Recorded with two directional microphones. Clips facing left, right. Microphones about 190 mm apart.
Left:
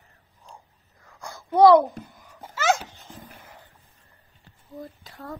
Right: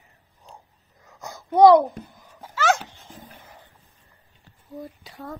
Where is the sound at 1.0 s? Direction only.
20° right (ahead or behind).